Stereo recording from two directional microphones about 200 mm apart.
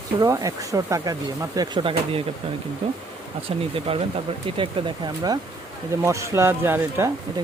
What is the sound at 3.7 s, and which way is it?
Speech, 30° right (ahead or behind).